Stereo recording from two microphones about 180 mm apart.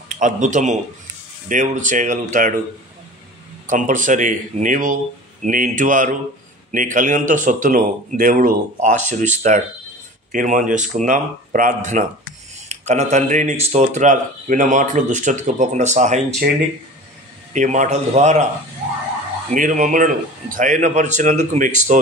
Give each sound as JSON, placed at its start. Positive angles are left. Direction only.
{"t": 0.2, "sound": "speech", "side_deg": -45}
{"t": 3.6, "sound": "speech", "side_deg": -45}
{"t": 17.5, "sound": "a man's voice", "side_deg": -40}
{"t": 19.5, "sound": "speech", "side_deg": -45}